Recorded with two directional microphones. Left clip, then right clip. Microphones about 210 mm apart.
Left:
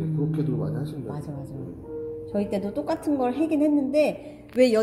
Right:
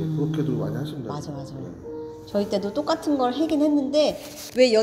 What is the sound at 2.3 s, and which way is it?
Speech, 5° left (ahead or behind).